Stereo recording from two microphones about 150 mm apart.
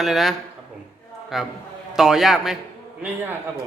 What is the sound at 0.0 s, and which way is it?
Mantra, centre (ahead or behind).